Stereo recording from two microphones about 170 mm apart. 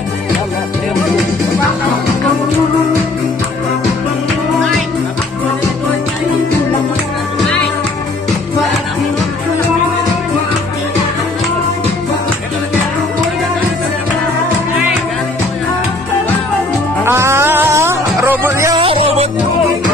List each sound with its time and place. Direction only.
17.0 s music: 15° right (ahead or behind)
18.8 s music: 35° right (ahead or behind)